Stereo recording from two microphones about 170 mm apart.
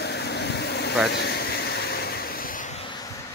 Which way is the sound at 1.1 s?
70° left (ahead or behind).